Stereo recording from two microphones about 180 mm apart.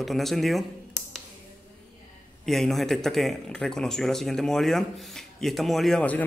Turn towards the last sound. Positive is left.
turn(degrees=5)  # may be behind; listen again after turning